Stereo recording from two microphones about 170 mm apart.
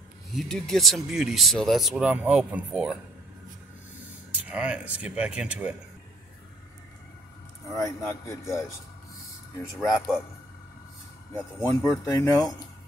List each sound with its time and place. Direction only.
0.3 s speech: centre (ahead or behind)
4.4 s speech: 10° right (ahead or behind)
7.7 s a man's voice: 20° left (ahead or behind)
9.8 s speech: 5° right (ahead or behind)
11.8 s speech: 20° left (ahead or behind)